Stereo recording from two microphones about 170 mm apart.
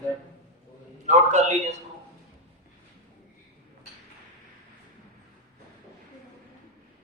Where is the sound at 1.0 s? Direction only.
45° right (ahead or behind).